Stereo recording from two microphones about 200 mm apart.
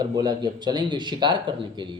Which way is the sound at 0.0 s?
20° right (ahead or behind).